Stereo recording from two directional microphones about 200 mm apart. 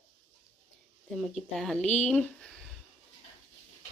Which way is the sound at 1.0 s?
Centre (ahead or behind).